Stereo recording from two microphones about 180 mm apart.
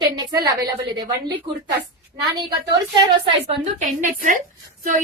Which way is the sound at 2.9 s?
35° right (ahead or behind).